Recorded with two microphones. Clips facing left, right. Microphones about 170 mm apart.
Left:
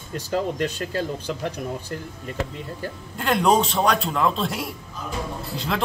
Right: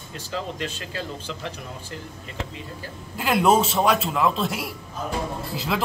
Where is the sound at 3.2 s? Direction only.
5° right (ahead or behind).